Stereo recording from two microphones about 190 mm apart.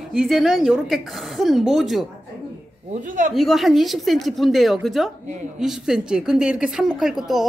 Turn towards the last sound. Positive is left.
turn(degrees=0)  # may be behind; listen again after turning